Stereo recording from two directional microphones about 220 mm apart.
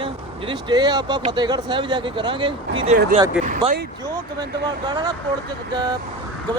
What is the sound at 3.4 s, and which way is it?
Speech, 35° right (ahead or behind).